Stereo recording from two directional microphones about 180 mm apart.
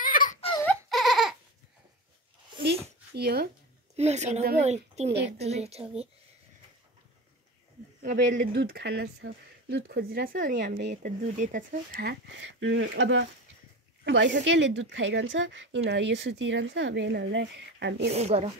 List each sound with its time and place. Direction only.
0.0 s a sound: 50° left (ahead or behind)
0.8 s a sound: centre (ahead or behind)
2.6 s a sound: 60° right (ahead or behind)
3.9 s a woman's voice: 35° right (ahead or behind)
8.0 s speech: 50° right (ahead or behind)
8.5 s speech: 65° right (ahead or behind); by 13.3 s 90° right
14.0 s a woman's voice: 80° right
15.9 s speech: 75° right (ahead or behind)
18.1 s a woman's voice: 35° right (ahead or behind)